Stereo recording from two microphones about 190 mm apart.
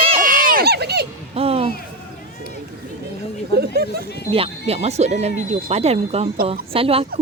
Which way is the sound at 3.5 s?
55° right (ahead or behind).